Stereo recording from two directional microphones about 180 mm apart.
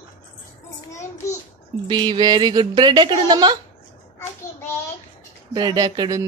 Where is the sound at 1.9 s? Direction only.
25° right (ahead or behind).